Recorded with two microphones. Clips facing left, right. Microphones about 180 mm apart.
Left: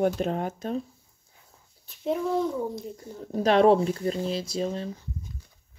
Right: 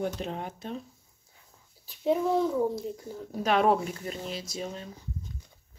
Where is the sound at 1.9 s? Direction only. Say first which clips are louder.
Right 1 dB; centre (ahead or behind).